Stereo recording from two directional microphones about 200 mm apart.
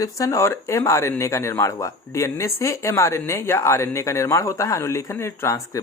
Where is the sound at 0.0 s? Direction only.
15° left (ahead or behind).